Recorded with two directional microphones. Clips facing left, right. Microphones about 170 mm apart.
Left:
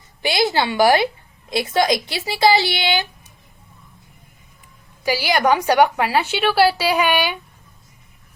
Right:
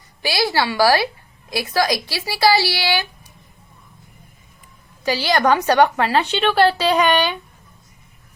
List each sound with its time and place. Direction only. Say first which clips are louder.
0.2 s a woman's voice: left 1 dB; 20° left (ahead or behind)
5.0 s a woman's voice: even; 10° left (ahead or behind)